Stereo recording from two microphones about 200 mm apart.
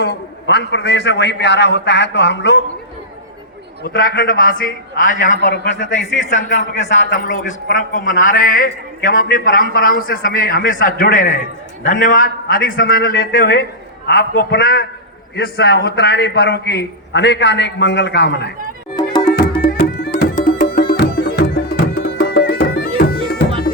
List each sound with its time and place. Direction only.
0.0 s a man's voice: 55° left (ahead or behind)
3.8 s speech: 45° left (ahead or behind)
5.4 s a man's voice: 60° left (ahead or behind)
6.0 s a man's voice: 35° left (ahead or behind); by 18.5 s 60° left (ahead or behind)
19.2 s music: 50° left (ahead or behind)
23.0 s bagpipes: 50° left (ahead or behind)